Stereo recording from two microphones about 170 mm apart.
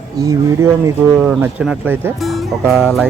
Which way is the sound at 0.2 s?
20° right (ahead or behind).